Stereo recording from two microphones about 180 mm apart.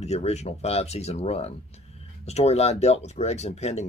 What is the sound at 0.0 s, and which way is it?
Speech, 35° left (ahead or behind).